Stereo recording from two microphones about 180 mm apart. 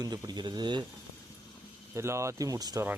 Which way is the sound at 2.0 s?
15° right (ahead or behind).